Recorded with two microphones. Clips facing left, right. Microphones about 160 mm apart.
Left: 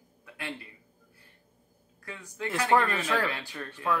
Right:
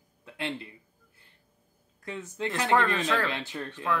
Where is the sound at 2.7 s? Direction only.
10° left (ahead or behind).